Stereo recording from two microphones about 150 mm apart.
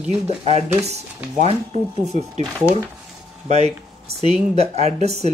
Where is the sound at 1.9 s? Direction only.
45° right (ahead or behind).